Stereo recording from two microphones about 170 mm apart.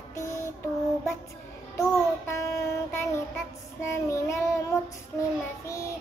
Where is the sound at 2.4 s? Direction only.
15° left (ahead or behind).